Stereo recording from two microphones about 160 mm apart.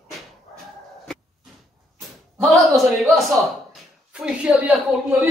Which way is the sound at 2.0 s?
Centre (ahead or behind).